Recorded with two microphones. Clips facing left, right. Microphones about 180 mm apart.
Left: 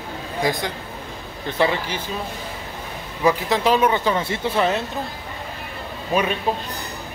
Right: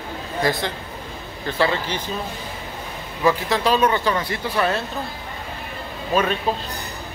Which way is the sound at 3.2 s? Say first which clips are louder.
Left 1 dB; 15° left (ahead or behind).